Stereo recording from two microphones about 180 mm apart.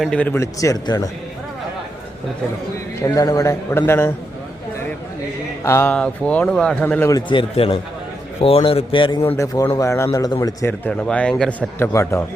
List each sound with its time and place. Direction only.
0.0 s a man's voice: 5° left (ahead or behind)
3.0 s a man's voice: 20° left (ahead or behind)
5.6 s a man's voice: 15° left (ahead or behind)
7.3 s speech: 30° left (ahead or behind)
9.2 s a man's voice: 15° left (ahead or behind)
11.9 s a man's voice: 15° left (ahead or behind)